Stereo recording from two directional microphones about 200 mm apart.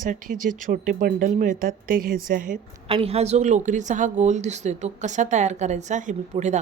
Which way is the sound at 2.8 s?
30° right (ahead or behind).